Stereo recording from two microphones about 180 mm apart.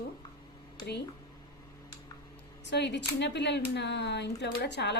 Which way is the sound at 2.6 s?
75° left (ahead or behind).